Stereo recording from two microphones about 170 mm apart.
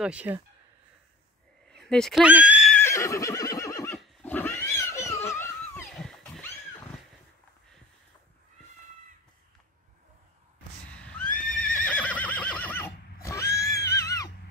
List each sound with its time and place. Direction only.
0.0 s speech: 5° right (ahead or behind)
1.7 s speech: 5° left (ahead or behind)
2.7 s neigh: 15° left (ahead or behind)
4.0 s pig: 10° left (ahead or behind)
5.9 s wild animals: 5° left (ahead or behind)
10.9 s neigh: 5° left (ahead or behind)
11.2 s neigh: 50° left (ahead or behind)
11.7 s neigh: 10° left (ahead or behind)